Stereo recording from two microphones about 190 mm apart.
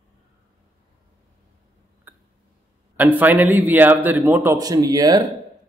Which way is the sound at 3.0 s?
10° right (ahead or behind).